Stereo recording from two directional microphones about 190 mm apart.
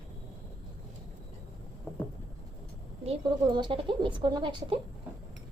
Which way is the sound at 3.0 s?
25° right (ahead or behind).